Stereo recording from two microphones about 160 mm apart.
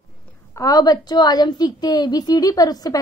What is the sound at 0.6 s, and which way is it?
A woman's voice, 20° left (ahead or behind).